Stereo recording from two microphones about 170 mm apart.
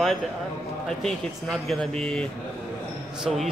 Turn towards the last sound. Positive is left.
turn(degrees=0)  # may be behind; listen again after turning